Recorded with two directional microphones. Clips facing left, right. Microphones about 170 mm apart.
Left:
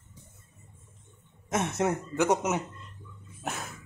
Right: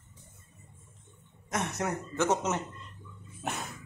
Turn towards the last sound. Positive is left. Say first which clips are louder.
# even
turn(degrees=0)  # may be behind; listen again after turning